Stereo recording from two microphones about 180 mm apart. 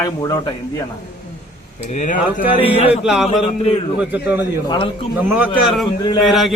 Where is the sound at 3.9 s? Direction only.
10° right (ahead or behind).